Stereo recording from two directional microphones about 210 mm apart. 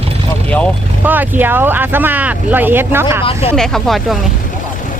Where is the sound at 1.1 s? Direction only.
10° right (ahead or behind).